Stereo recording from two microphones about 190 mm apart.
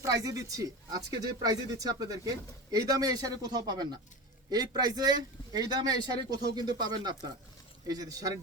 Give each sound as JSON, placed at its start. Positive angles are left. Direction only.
{"t": 0.0, "sound": "speech", "side_deg": -20}